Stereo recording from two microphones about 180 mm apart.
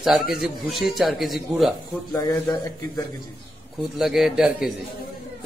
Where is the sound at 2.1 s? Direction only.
20° left (ahead or behind).